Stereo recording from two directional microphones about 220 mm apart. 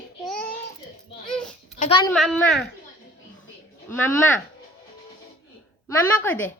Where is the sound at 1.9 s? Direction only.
20° left (ahead or behind).